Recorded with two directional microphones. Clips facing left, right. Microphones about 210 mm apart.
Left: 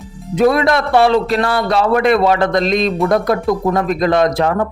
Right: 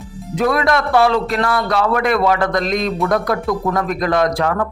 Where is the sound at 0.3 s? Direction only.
25° left (ahead or behind).